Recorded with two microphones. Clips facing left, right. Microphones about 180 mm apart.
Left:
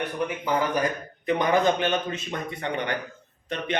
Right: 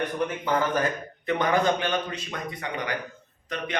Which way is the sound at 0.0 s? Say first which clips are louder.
Right 1 dB; 10° left (ahead or behind).